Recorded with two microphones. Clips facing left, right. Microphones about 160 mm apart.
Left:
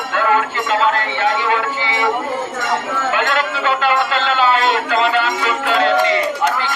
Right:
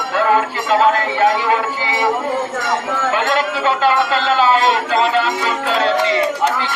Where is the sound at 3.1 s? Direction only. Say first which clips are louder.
Right 1 dB; 35° right (ahead or behind).